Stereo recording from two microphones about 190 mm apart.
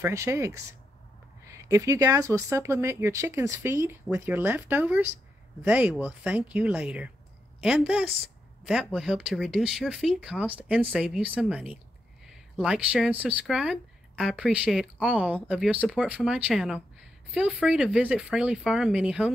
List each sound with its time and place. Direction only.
0.0 s speech: 15° right (ahead or behind)